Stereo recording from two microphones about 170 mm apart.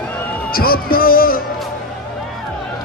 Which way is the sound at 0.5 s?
60° left (ahead or behind).